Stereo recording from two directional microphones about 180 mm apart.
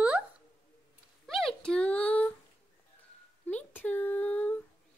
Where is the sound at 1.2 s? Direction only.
Centre (ahead or behind).